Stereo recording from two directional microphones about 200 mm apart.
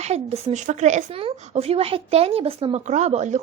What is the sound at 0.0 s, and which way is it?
A woman's voice, 30° right (ahead or behind).